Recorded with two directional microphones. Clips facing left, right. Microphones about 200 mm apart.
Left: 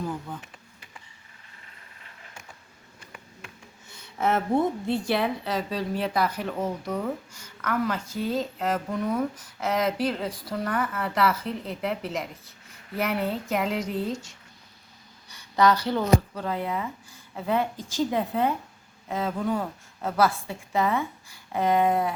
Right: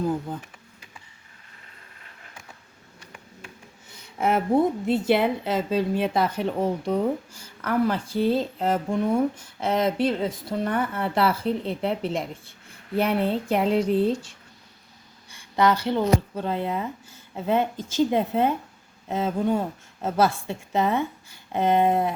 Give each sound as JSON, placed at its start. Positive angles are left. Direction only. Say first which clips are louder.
{"t": 4.2, "sound": "speech", "louder": "right 3 dB", "side_deg": -10}
{"t": 4.9, "sound": "a woman's voice", "louder": "right 4 dB", "side_deg": -20}